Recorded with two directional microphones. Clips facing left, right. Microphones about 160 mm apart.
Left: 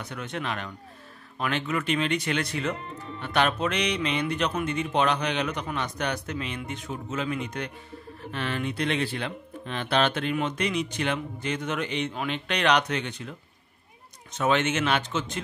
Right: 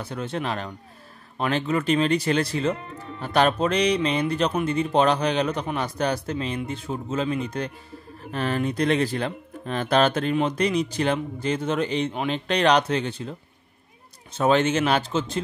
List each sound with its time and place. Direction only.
0.0 s speech: 30° right (ahead or behind)